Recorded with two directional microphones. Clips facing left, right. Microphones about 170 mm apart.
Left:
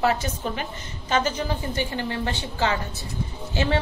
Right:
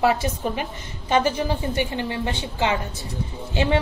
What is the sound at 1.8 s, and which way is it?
A woman's voice, 20° right (ahead or behind).